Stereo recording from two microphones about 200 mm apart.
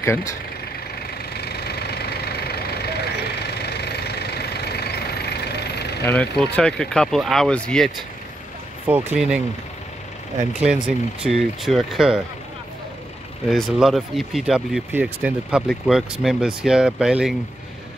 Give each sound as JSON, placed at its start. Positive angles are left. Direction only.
{"t": 0.0, "sound": "speech", "side_deg": 15}
{"t": 1.1, "sound": "vehicle", "side_deg": 55}
{"t": 6.0, "sound": "speech", "side_deg": 5}
{"t": 8.8, "sound": "speech", "side_deg": -5}
{"t": 11.2, "sound": "speech", "side_deg": 0}
{"t": 13.5, "sound": "speech", "side_deg": 0}